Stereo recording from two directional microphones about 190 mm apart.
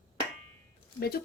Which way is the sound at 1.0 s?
55° left (ahead or behind).